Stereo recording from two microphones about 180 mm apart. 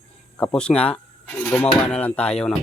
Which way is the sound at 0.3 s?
5° left (ahead or behind).